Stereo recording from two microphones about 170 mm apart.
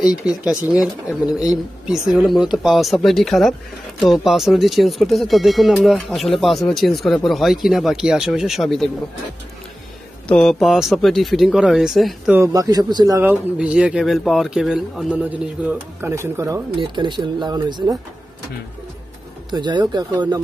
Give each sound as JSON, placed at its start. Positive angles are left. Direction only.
{"t": 1.2, "sound": "a man's voice", "side_deg": 20}
{"t": 1.9, "sound": "speech", "side_deg": 0}
{"t": 10.2, "sound": "speech", "side_deg": 5}
{"t": 12.4, "sound": "speech", "side_deg": -20}
{"t": 13.2, "sound": "speech", "side_deg": -10}
{"t": 16.7, "sound": "speech", "side_deg": -30}
{"t": 19.5, "sound": "speech", "side_deg": -25}